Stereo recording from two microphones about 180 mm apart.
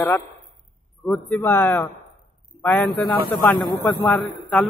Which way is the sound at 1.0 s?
10° left (ahead or behind).